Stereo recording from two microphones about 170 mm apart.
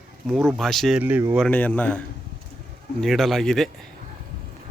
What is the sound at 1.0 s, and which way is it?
Speech, 10° right (ahead or behind).